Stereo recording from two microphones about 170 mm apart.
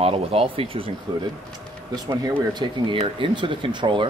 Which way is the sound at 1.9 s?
25° right (ahead or behind).